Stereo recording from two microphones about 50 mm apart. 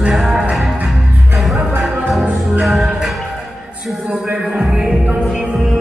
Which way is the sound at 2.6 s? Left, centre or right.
Centre.